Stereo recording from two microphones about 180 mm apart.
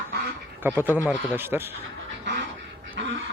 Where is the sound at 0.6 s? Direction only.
10° right (ahead or behind).